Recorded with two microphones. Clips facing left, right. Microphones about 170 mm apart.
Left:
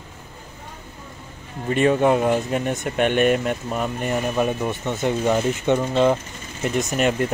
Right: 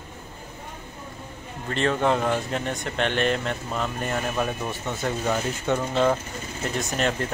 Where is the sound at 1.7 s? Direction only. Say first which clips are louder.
Left 6 dB; 15° left (ahead or behind).